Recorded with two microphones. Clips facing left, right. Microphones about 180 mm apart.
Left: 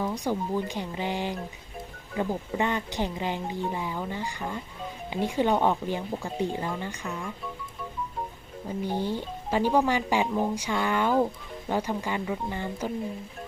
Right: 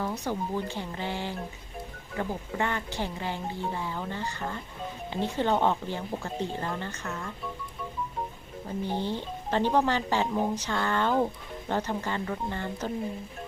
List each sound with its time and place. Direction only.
0.0 s speech: 10° left (ahead or behind)
8.8 s speech: 10° left (ahead or behind)